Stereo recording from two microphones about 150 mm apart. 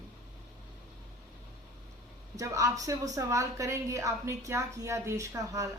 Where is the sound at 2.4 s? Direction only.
20° right (ahead or behind).